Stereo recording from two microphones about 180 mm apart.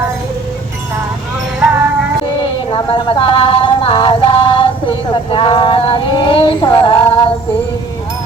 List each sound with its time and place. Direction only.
2.6 s music: 30° left (ahead or behind)
5.3 s female singing: 30° left (ahead or behind)